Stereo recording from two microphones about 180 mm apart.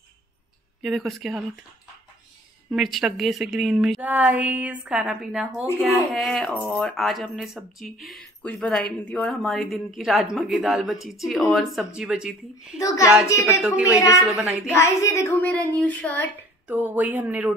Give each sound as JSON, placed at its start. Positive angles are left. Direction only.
{"t": 0.8, "sound": "speech", "side_deg": 0}
{"t": 2.7, "sound": "speech", "side_deg": 0}
{"t": 5.9, "sound": "speech", "side_deg": 5}
{"t": 12.7, "sound": "a child's voice", "side_deg": 20}
{"t": 13.5, "sound": "speech", "side_deg": -5}
{"t": 13.8, "sound": "speech", "side_deg": 15}
{"t": 14.2, "sound": "speech", "side_deg": 0}
{"t": 14.7, "sound": "speech", "side_deg": 15}
{"t": 16.6, "sound": "speech", "side_deg": -10}